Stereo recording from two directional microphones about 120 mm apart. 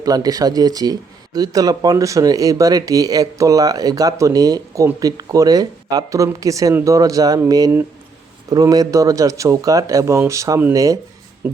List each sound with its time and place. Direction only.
0.0 s speech: 30° right (ahead or behind)
11.4 s speech: 15° right (ahead or behind)